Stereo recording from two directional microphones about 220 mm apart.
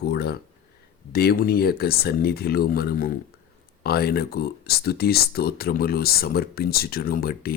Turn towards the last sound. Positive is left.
turn(degrees=45)  # may be behind; listen again after turning